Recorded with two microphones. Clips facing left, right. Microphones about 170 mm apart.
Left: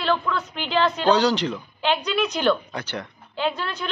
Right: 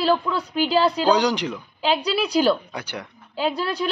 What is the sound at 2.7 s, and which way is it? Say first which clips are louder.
Speech: left 1 dB; 10° right (ahead or behind).